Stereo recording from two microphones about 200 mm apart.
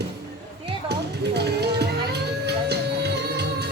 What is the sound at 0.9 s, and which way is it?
Music, 55° right (ahead or behind).